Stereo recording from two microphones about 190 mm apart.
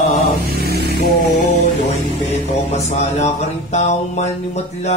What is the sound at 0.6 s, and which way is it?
Music, 60° right (ahead or behind).